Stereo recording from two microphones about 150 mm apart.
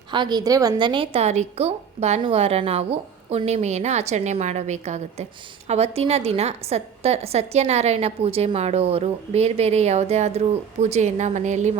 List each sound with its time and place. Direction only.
0.1 s a woman's voice: 30° right (ahead or behind); by 11.7 s 50° right (ahead or behind)